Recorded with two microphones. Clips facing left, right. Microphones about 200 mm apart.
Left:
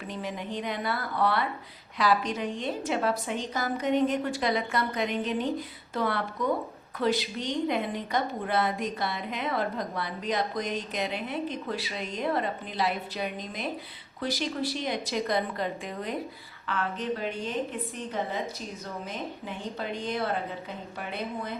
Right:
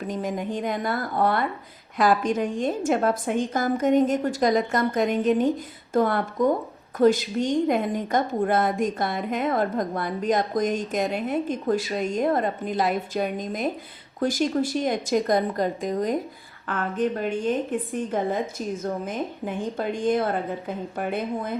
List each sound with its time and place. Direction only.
0.1 s a woman's voice: 45° right (ahead or behind)